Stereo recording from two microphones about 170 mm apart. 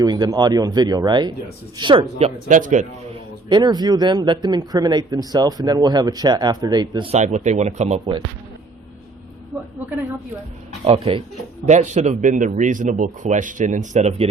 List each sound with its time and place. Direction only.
0.0 s a man's voice: 25° right (ahead or behind); by 2.8 s 50° right (ahead or behind)
3.5 s a man's voice: 25° right (ahead or behind)
7.1 s speech: 40° right (ahead or behind)
10.8 s speech: 35° right (ahead or behind)